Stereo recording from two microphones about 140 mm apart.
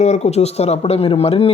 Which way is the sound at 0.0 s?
55° left (ahead or behind).